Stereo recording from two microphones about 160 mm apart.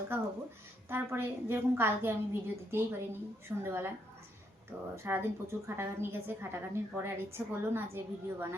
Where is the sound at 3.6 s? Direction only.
15° right (ahead or behind).